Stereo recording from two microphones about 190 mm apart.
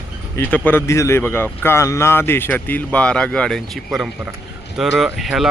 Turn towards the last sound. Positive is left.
turn(degrees=0)  # may be behind; listen again after turning